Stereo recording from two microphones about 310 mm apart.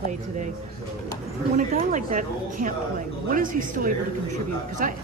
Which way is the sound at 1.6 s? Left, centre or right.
Right.